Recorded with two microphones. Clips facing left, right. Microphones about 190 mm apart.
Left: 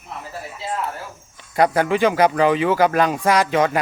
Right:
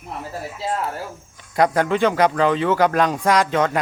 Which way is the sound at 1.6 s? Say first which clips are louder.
Left 1 dB; 10° left (ahead or behind).